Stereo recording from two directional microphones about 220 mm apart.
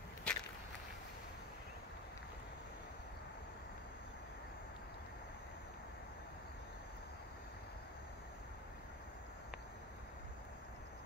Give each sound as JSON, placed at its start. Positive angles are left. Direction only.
{"t": 0.3, "sound": "walk", "side_deg": 5}